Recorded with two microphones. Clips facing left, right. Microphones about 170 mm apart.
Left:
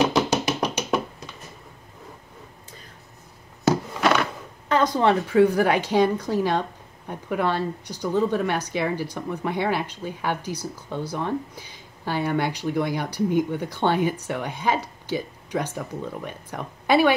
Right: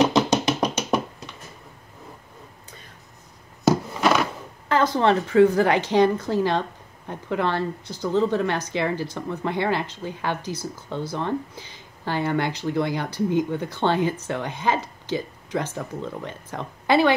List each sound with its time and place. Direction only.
0.1 s music: 10° left (ahead or behind)
4.0 s a sound: 5° right (ahead or behind)
4.7 s speech: 15° left (ahead or behind)